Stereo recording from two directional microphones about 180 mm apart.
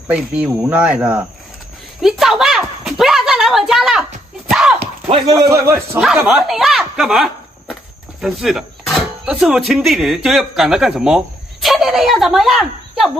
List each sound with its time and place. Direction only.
0.1 s speech: 5° right (ahead or behind)
2.0 s a sound: centre (ahead or behind)
4.5 s horse: 5° right (ahead or behind)
5.0 s speech: 35° right (ahead or behind)
5.3 s speech: 20° right (ahead or behind)
5.9 s speech: centre (ahead or behind)